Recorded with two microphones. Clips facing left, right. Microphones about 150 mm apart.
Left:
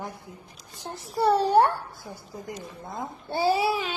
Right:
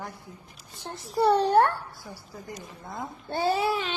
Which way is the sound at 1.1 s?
Centre (ahead or behind).